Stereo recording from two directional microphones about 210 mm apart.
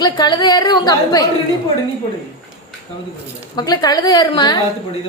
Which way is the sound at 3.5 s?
20° left (ahead or behind).